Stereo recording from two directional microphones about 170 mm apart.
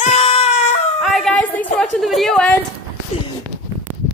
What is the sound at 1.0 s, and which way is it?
A woman's voice, centre (ahead or behind).